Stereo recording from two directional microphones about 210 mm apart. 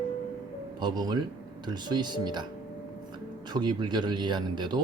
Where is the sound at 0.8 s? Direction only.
20° right (ahead or behind).